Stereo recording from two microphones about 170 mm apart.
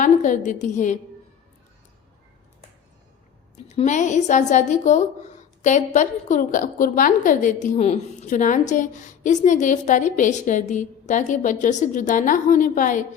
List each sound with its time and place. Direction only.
0.0 s a woman's voice: 45° left (ahead or behind)
3.7 s a woman's voice: 45° left (ahead or behind)